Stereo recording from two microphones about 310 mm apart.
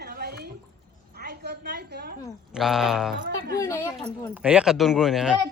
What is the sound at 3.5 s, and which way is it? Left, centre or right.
Speech, centre.